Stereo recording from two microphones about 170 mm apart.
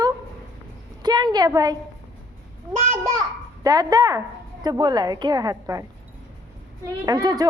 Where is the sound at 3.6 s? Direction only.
20° right (ahead or behind).